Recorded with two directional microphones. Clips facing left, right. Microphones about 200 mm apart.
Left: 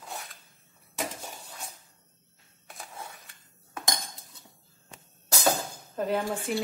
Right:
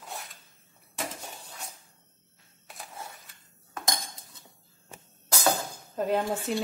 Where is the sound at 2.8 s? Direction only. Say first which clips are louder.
Even; centre (ahead or behind).